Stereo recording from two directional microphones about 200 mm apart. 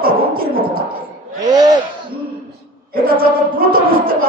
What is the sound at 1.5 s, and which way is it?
Speech, 20° right (ahead or behind).